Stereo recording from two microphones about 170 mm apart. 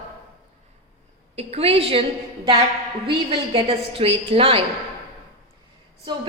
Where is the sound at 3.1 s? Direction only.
30° right (ahead or behind).